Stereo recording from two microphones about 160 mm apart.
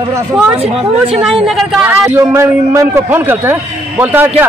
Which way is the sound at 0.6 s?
40° right (ahead or behind).